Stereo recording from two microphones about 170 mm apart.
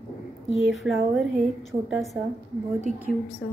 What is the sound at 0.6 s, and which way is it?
A woman's voice, centre (ahead or behind).